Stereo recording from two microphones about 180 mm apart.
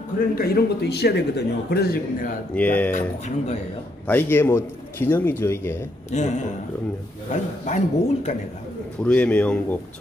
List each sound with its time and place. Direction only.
0.4 s a man's voice: 60° left (ahead or behind)
2.5 s a man's voice: 10° left (ahead or behind)
4.1 s a man's voice: 10° left (ahead or behind)
6.1 s a man's voice: 40° left (ahead or behind)
9.0 s a man's voice: 5° left (ahead or behind)